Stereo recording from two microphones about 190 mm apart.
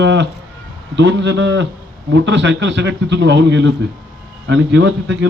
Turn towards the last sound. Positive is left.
turn(degrees=-75)  # may be behind; listen again after turning